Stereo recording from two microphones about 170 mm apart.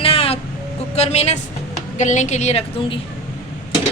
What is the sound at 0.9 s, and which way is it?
A woman's voice, 40° left (ahead or behind).